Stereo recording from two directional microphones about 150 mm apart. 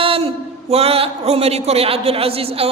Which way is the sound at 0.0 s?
40° right (ahead or behind).